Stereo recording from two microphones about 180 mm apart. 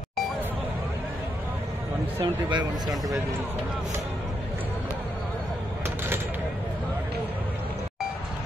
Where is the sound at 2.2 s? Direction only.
25° right (ahead or behind).